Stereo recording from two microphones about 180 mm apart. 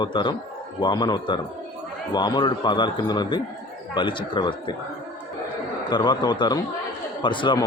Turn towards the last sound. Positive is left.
turn(degrees=25)  # may be behind; listen again after turning